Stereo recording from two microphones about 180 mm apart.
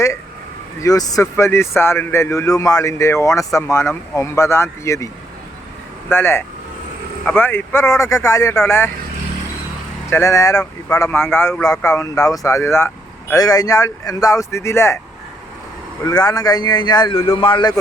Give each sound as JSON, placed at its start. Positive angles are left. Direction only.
{"t": 0.8, "sound": "speech", "side_deg": 20}
{"t": 10.1, "sound": "speech", "side_deg": 15}
{"t": 16.0, "sound": "speech", "side_deg": 20}